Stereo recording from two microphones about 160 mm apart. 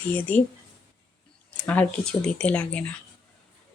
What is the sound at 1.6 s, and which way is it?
Speech, 10° left (ahead or behind).